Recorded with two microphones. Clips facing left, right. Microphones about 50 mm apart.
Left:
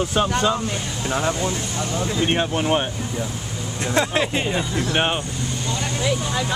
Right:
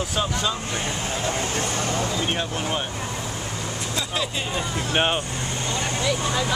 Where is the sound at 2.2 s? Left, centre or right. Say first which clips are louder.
Left 6 dB; left.